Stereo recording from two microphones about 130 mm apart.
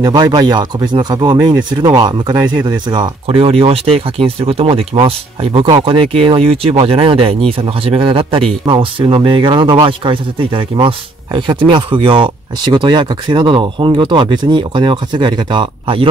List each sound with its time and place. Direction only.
0.0 s speech: 30° right (ahead or behind)